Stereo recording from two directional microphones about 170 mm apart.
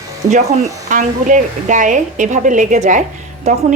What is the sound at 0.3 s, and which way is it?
Speech, 45° right (ahead or behind).